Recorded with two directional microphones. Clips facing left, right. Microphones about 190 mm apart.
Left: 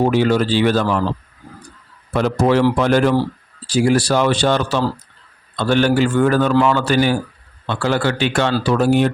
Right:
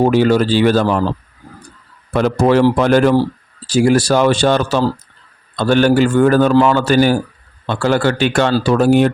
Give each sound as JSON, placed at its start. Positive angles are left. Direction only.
{"t": 0.0, "sound": "speech", "side_deg": -40}
{"t": 2.1, "sound": "speech", "side_deg": -50}